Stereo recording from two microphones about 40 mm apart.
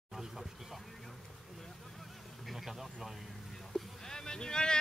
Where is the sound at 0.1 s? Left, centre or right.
Centre.